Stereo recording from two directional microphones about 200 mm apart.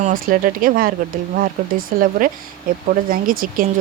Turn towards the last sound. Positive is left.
turn(degrees=-45)  # may be behind; listen again after turning